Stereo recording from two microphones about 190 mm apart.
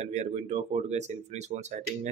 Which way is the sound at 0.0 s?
35° right (ahead or behind).